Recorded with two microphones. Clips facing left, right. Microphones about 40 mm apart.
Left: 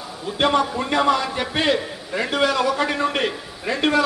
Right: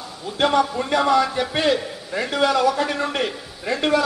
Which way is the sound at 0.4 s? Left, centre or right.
Centre.